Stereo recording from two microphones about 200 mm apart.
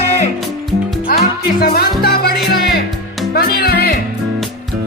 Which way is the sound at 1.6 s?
50° left (ahead or behind).